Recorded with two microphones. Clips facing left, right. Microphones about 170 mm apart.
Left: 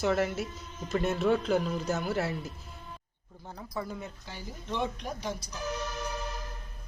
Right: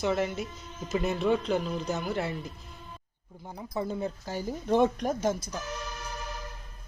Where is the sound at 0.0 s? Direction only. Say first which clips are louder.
Even; centre (ahead or behind).